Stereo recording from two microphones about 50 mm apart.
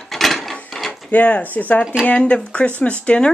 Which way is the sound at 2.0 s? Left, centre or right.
Left.